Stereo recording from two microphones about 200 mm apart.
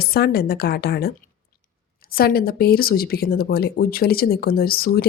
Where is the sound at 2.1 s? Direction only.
50° left (ahead or behind).